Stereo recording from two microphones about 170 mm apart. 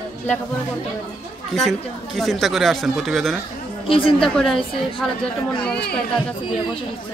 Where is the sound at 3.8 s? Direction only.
30° left (ahead or behind).